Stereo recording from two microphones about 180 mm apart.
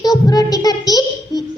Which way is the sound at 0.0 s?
20° left (ahead or behind).